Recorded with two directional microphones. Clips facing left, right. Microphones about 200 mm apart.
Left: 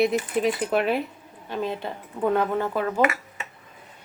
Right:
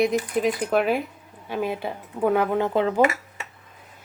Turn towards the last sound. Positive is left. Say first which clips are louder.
# right 3 dB
turn(degrees=-25)  # may be behind; listen again after turning